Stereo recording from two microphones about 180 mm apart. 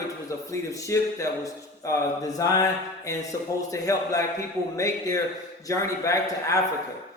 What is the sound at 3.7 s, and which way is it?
A man's voice, 15° left (ahead or behind).